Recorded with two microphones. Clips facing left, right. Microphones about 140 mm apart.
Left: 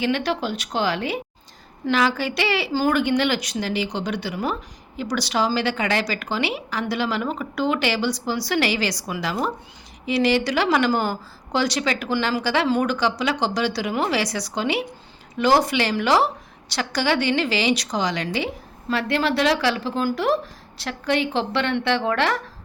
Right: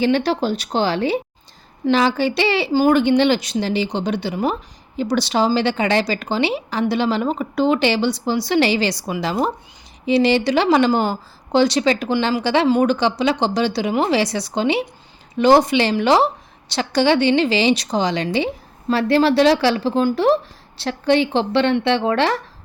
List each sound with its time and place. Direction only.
0.0 s speech: 35° right (ahead or behind)